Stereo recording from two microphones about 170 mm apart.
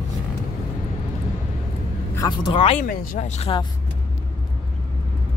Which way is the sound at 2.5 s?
35° left (ahead or behind).